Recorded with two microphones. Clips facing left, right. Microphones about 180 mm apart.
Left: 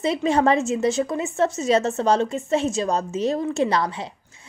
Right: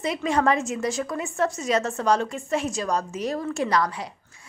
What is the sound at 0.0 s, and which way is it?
A woman's voice, 25° left (ahead or behind).